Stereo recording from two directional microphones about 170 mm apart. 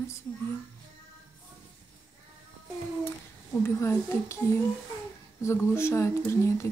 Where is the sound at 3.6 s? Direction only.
15° left (ahead or behind).